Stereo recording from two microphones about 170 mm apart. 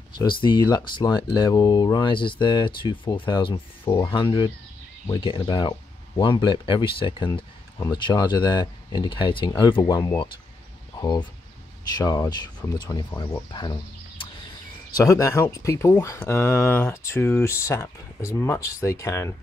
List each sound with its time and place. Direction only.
0.2 s speech: 25° left (ahead or behind)